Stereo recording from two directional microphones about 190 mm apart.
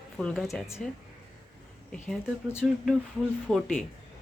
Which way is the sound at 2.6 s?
Centre (ahead or behind).